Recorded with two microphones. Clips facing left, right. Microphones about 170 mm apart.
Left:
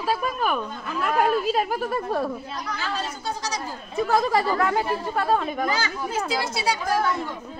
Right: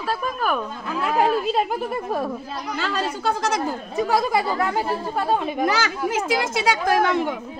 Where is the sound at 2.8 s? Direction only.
70° right (ahead or behind).